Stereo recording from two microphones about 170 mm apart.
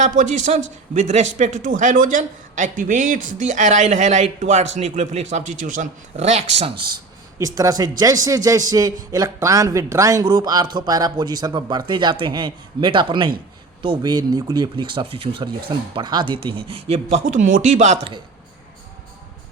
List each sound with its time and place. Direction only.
0.0 s speech: 45° right (ahead or behind)
7.3 s a man's voice: 20° right (ahead or behind); by 18.1 s 40° right (ahead or behind)